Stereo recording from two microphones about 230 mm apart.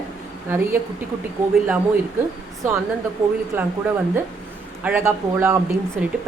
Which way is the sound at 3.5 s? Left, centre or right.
Centre.